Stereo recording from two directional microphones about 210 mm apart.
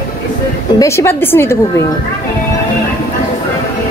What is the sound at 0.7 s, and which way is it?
Speech, 15° left (ahead or behind).